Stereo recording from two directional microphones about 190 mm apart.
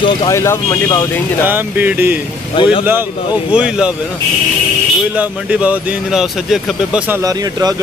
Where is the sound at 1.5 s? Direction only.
10° right (ahead or behind).